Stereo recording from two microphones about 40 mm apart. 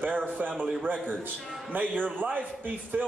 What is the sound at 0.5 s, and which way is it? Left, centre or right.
Speech, centre.